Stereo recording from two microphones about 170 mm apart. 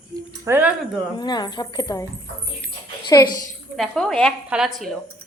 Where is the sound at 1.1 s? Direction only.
25° left (ahead or behind).